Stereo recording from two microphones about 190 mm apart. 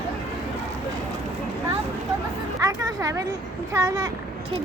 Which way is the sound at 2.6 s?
20° right (ahead or behind).